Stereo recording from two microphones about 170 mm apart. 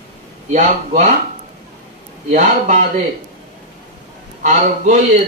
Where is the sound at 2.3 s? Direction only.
45° right (ahead or behind).